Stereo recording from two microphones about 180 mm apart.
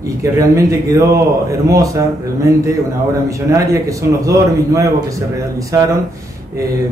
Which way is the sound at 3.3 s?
15° right (ahead or behind).